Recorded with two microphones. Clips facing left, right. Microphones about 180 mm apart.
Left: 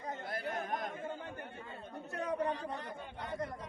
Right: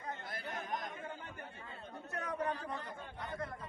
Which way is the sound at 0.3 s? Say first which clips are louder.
Left 6 dB; 55° left (ahead or behind).